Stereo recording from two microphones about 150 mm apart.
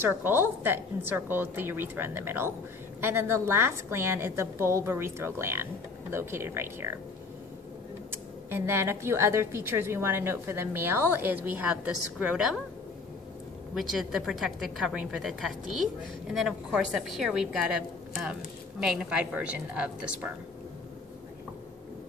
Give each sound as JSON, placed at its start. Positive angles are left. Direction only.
{"t": 0.0, "sound": "a woman's voice", "side_deg": -15}
{"t": 8.1, "sound": "a woman's voice", "side_deg": -15}
{"t": 13.7, "sound": "a woman's voice", "side_deg": 0}